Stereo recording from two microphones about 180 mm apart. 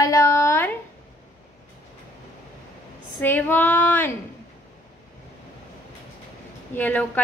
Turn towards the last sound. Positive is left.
turn(degrees=10)  # may be behind; listen again after turning